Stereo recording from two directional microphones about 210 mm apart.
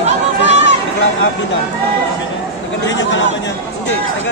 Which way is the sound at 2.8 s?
60° left (ahead or behind).